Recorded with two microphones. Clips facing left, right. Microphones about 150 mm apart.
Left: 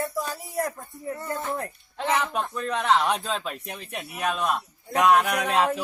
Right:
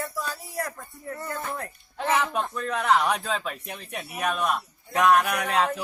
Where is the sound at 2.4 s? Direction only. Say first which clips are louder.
Even; centre (ahead or behind).